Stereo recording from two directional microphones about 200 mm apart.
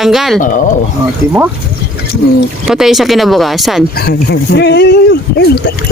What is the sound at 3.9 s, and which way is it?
Speech, 55° left (ahead or behind).